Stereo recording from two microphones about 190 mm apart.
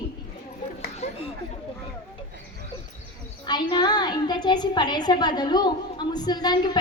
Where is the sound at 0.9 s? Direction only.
35° left (ahead or behind).